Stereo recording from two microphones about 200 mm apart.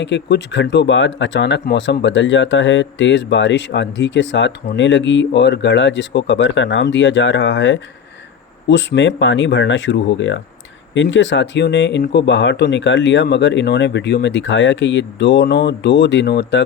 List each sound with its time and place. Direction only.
0.0 s speech: 60° left (ahead or behind)